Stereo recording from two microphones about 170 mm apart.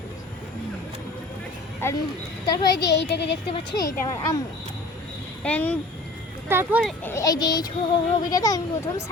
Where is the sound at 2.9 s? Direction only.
90° left.